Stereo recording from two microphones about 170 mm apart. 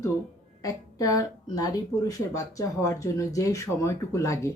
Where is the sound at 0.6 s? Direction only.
20° left (ahead or behind).